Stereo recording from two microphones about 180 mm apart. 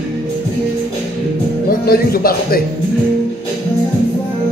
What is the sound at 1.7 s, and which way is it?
Speech, 55° left (ahead or behind).